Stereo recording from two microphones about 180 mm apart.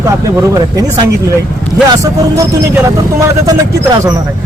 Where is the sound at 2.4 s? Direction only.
15° right (ahead or behind).